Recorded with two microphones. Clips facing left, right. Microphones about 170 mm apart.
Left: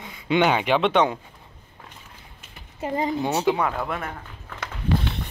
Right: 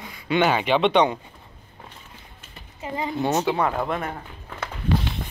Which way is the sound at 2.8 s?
40° left (ahead or behind).